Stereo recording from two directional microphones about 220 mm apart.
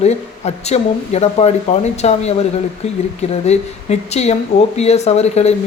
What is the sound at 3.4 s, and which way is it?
Speech, 30° left (ahead or behind).